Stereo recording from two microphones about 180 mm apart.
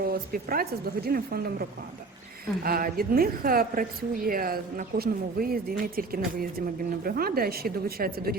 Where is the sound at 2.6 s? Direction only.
55° right (ahead or behind).